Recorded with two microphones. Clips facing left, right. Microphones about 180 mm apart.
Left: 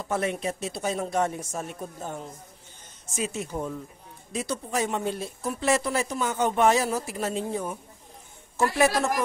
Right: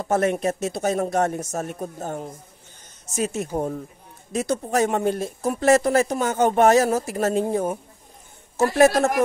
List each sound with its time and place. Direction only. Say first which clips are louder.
0.0 s speech: right 7 dB; 50° right (ahead or behind)